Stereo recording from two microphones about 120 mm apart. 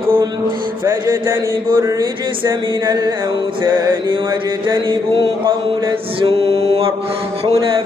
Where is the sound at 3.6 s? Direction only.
40° right (ahead or behind).